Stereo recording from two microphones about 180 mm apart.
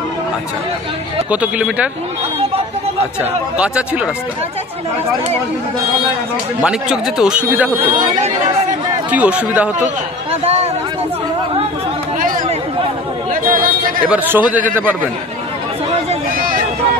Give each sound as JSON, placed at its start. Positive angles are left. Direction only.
{"t": 1.3, "sound": "speech", "side_deg": -5}
{"t": 3.2, "sound": "speech", "side_deg": -5}
{"t": 6.6, "sound": "a man's voice", "side_deg": -5}
{"t": 9.1, "sound": "speech", "side_deg": -10}
{"t": 10.4, "sound": "a sound", "side_deg": -35}
{"t": 12.2, "sound": "chatter", "side_deg": -50}
{"t": 14.0, "sound": "speech", "side_deg": -10}
{"t": 16.3, "sound": "a sound", "side_deg": -50}